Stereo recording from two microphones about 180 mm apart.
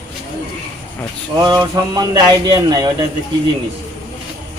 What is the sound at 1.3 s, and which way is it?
Speech, 20° right (ahead or behind).